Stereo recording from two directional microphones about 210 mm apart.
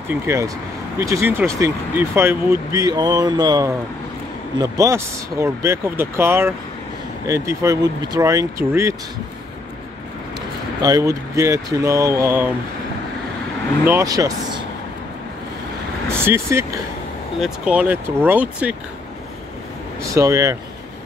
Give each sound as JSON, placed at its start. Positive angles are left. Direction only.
{"t": 0.1, "sound": "speech", "side_deg": -10}
{"t": 10.8, "sound": "speech", "side_deg": -15}
{"t": 13.8, "sound": "speech", "side_deg": -15}
{"t": 16.3, "sound": "speech", "side_deg": -10}
{"t": 20.2, "sound": "speech", "side_deg": -15}